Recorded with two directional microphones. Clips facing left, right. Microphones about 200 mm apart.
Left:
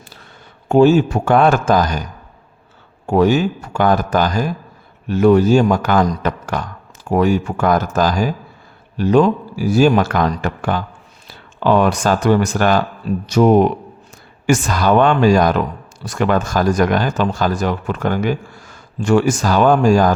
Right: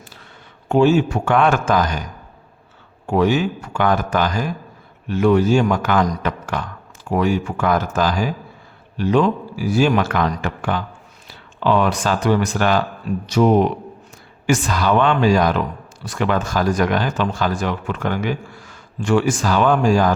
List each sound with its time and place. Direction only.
0.7 s speech: 40° left (ahead or behind)
3.1 s speech: 40° left (ahead or behind)